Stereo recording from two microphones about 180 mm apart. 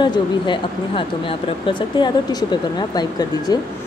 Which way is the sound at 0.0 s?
25° left (ahead or behind).